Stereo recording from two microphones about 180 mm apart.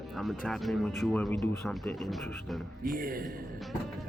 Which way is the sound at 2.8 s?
50° right (ahead or behind).